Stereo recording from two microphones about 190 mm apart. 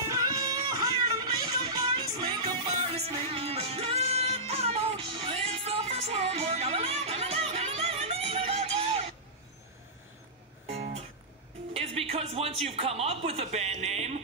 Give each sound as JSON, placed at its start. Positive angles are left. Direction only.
{"t": 0.2, "sound": "music", "side_deg": -20}
{"t": 10.7, "sound": "music", "side_deg": -35}
{"t": 11.7, "sound": "a sound", "side_deg": -30}